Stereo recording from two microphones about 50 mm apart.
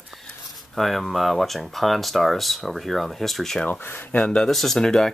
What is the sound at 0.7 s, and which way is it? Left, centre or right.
Speech, centre.